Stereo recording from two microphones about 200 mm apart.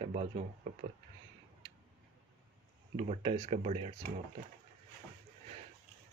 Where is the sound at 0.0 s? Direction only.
30° right (ahead or behind).